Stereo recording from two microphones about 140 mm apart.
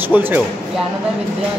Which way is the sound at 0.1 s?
10° right (ahead or behind).